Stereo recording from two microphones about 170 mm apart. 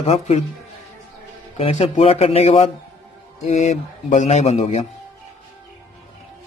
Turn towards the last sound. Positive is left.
turn(degrees=40)  # may be behind; listen again after turning